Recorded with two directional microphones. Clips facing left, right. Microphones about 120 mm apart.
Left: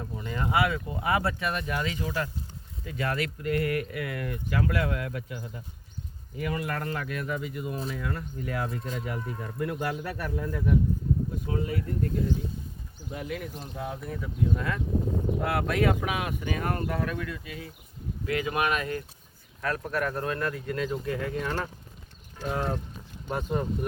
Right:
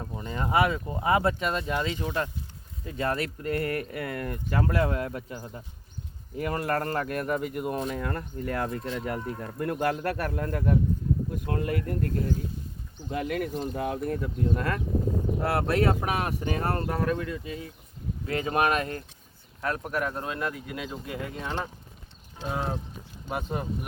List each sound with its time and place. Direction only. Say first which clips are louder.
0.0 s speech: even; 25° right (ahead or behind); by 14.8 s 50° right (ahead or behind)
15.4 s speech: right 2 dB; 30° right (ahead or behind)
19.6 s speech: even; 20° right (ahead or behind)
23.3 s speech: left 2 dB; 5° right (ahead or behind)